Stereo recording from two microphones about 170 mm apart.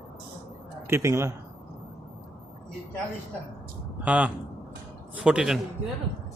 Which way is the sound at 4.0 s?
10° right (ahead or behind).